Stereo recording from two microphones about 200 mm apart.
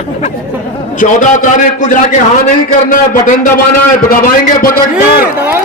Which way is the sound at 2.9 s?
40° left (ahead or behind).